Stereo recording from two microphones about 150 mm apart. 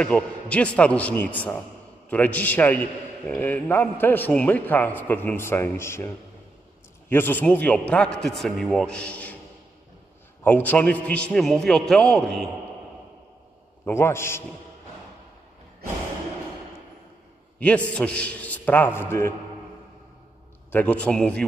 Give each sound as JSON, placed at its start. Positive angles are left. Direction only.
{"t": 0.0, "sound": "a man's voice", "side_deg": 10}
{"t": 10.4, "sound": "a man's voice", "side_deg": 10}
{"t": 13.8, "sound": "a man's voice", "side_deg": 15}
{"t": 17.6, "sound": "a man's voice", "side_deg": 10}
{"t": 20.7, "sound": "a man's voice", "side_deg": 10}